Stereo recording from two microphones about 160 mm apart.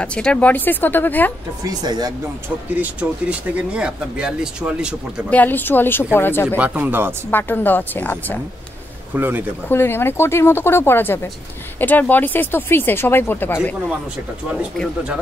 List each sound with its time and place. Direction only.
0.0 s speech: 5° left (ahead or behind)
1.7 s speech: 25° right (ahead or behind)
2.7 s speech: 10° right (ahead or behind)
5.3 s speech: 10° left (ahead or behind)
6.5 s speech: 10° right (ahead or behind)
7.2 s speech: 10° left (ahead or behind)
9.1 s speech: 15° right (ahead or behind)
9.7 s speech: 15° left (ahead or behind)